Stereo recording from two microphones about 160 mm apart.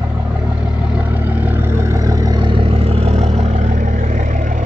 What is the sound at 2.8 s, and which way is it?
Vehicle, 40° right (ahead or behind).